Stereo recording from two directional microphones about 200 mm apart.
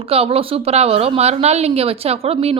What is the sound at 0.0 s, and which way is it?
A woman's voice, 30° right (ahead or behind).